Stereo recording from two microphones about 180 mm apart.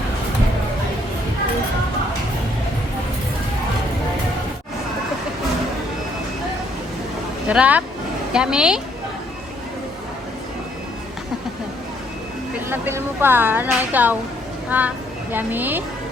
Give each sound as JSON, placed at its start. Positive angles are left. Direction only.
{"t": 7.4, "sound": "a woman's voice", "side_deg": -10}
{"t": 12.5, "sound": "a woman's voice", "side_deg": -10}